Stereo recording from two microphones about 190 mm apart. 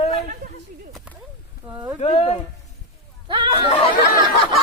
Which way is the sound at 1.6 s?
10° right (ahead or behind).